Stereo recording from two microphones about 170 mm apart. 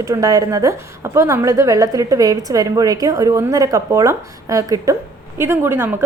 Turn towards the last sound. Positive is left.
turn(degrees=-15)  # may be behind; listen again after turning